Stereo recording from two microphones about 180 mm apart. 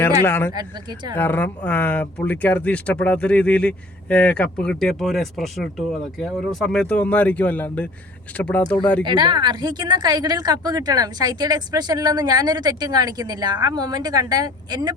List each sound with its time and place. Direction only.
0.3 s speech: 10° left (ahead or behind)
0.5 s speech: 25° right (ahead or behind)
1.1 s speech: 10° left (ahead or behind)
9.0 s speech: 25° right (ahead or behind)